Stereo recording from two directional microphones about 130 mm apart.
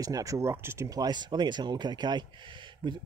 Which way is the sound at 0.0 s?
25° right (ahead or behind).